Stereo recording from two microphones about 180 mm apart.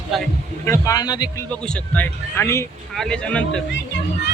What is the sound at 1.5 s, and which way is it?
A man's voice, 5° left (ahead or behind).